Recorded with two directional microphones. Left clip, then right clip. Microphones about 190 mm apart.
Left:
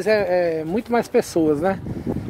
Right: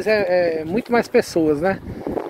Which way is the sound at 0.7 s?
5° left (ahead or behind).